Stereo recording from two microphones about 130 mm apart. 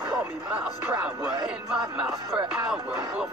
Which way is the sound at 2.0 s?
5° right (ahead or behind).